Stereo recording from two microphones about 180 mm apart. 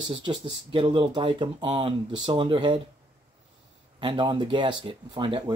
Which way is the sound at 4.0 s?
25° right (ahead or behind).